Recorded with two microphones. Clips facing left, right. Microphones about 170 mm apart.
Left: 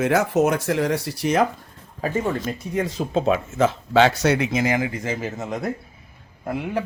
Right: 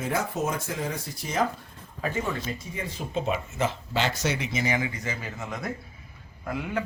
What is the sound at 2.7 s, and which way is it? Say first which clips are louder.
Speech: left 11 dB; 90° left.